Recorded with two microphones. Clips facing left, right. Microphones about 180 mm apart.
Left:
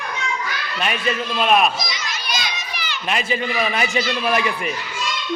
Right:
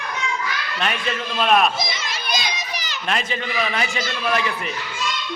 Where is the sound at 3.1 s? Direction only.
10° left (ahead or behind).